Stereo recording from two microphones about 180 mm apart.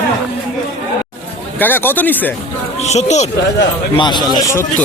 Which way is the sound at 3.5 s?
25° left (ahead or behind).